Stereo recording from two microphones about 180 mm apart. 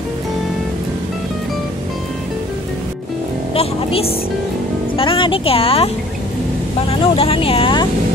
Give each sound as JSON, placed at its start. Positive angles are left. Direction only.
{"t": 3.5, "sound": "speech", "side_deg": 35}
{"t": 6.9, "sound": "speech", "side_deg": 30}